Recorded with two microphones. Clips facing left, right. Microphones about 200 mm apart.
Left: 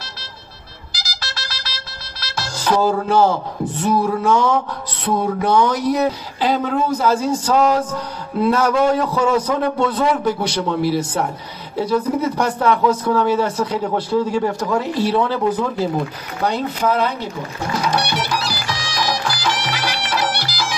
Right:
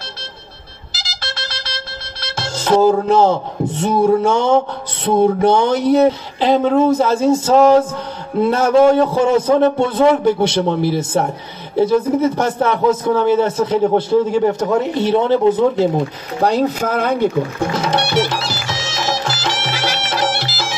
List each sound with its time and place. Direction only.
0.9 s music: 25° right (ahead or behind)
3.8 s speech: 25° right (ahead or behind)
16.4 s speech: 40° right (ahead or behind)
17.7 s music: 25° right (ahead or behind)